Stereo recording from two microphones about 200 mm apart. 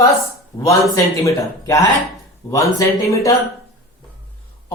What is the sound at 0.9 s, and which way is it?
Speech, 15° left (ahead or behind).